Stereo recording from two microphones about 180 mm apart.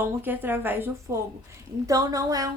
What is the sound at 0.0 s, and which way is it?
A woman's voice, 10° right (ahead or behind).